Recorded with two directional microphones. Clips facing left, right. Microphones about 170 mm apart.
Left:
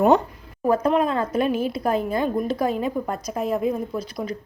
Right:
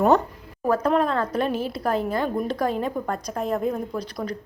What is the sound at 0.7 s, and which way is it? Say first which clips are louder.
A woman's voice: left 1 dB; 10° left (ahead or behind).